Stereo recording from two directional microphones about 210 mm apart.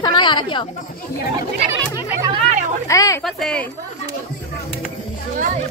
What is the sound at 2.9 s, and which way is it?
Speech, 15° left (ahead or behind).